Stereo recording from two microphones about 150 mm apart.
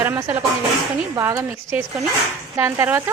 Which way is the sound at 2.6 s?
15° right (ahead or behind).